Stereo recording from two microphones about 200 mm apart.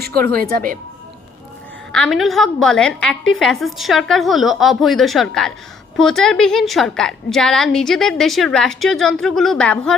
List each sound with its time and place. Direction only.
0.3 s a woman's voice: 45° right (ahead or behind)
1.9 s a woman's voice: centre (ahead or behind)